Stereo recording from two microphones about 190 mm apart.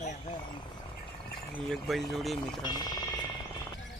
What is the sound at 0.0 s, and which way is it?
Vehicle, 40° left (ahead or behind).